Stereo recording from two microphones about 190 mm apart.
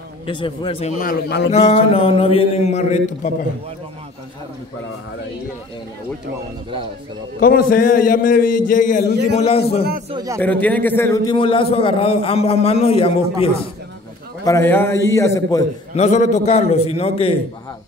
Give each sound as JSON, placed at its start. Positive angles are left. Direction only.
{"t": 0.3, "sound": "a man's voice", "side_deg": 25}
{"t": 7.3, "sound": "a man's voice", "side_deg": 50}
{"t": 9.5, "sound": "a man's voice", "side_deg": 30}
{"t": 10.1, "sound": "a man's voice", "side_deg": -15}
{"t": 10.4, "sound": "a man's voice", "side_deg": 10}
{"t": 11.3, "sound": "a man's voice", "side_deg": 25}
{"t": 14.4, "sound": "a man's voice", "side_deg": 15}
{"t": 16.0, "sound": "a man's voice", "side_deg": 40}